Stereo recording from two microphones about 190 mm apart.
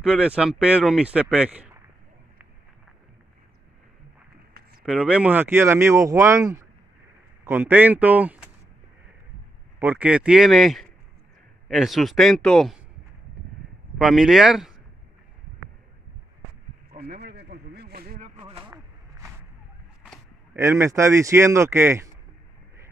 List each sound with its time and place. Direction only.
0.2 s speech: 5° right (ahead or behind)
4.8 s speech: 5° right (ahead or behind)
9.8 s speech: 10° right (ahead or behind)
13.9 s speech: centre (ahead or behind)
16.9 s a sound: 60° right (ahead or behind)
18.7 s a sound: 10° right (ahead or behind)
20.5 s speech: 15° right (ahead or behind)